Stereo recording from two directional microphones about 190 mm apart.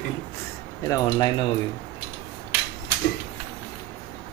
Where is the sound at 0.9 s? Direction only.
20° left (ahead or behind).